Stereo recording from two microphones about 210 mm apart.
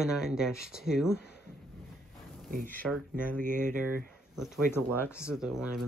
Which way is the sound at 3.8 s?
40° right (ahead or behind).